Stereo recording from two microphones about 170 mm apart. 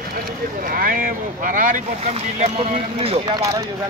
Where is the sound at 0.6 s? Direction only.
55° right (ahead or behind); by 3.6 s 20° right (ahead or behind).